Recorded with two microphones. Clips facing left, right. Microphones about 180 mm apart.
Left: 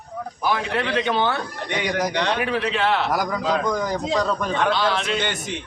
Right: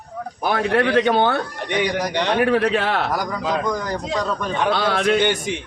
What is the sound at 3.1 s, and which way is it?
A man's voice, 5° left (ahead or behind).